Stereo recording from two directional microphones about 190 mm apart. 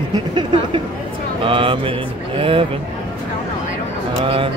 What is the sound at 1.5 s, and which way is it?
Speech, 25° right (ahead or behind).